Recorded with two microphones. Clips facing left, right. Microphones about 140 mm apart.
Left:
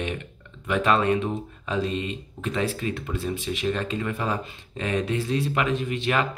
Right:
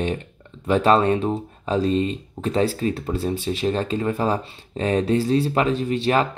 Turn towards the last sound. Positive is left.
turn(degrees=-35)  # may be behind; listen again after turning